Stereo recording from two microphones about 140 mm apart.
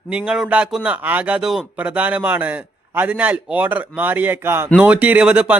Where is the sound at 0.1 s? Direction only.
5° right (ahead or behind).